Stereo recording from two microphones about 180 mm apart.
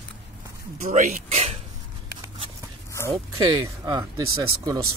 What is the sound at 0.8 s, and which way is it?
Speech, 45° right (ahead or behind).